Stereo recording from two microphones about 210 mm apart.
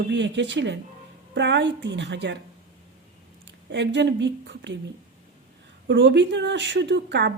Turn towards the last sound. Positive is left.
turn(degrees=-55)  # may be behind; listen again after turning